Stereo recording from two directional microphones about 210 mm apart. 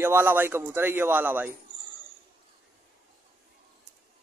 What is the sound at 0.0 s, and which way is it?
A man's voice, 10° right (ahead or behind).